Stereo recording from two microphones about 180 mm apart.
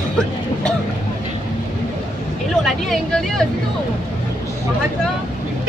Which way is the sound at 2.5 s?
Centre (ahead or behind).